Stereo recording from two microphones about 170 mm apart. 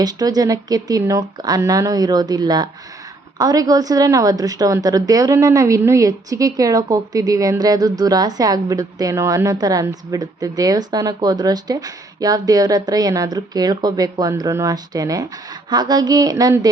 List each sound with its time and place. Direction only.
0.0 s a woman's voice: 25° right (ahead or behind)